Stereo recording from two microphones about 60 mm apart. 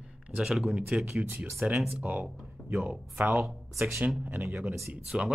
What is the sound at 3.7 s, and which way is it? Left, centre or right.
Speech, right.